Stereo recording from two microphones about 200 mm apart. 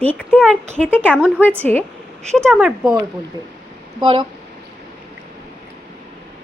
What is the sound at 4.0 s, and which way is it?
Speech, 25° right (ahead or behind).